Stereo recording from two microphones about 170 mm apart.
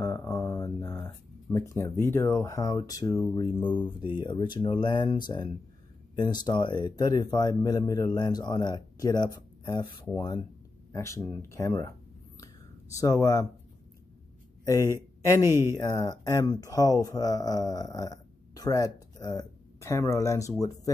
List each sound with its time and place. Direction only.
0.0 s a sound: 15° left (ahead or behind)
4.2 s speech: 25° left (ahead or behind)
13.0 s speech: 20° left (ahead or behind)
14.6 s speech: 20° left (ahead or behind)
15.4 s speech: 15° right (ahead or behind)
15.7 s speech: 25° left (ahead or behind)